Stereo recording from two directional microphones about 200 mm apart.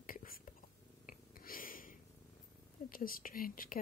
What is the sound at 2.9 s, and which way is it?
Speech, 45° left (ahead or behind).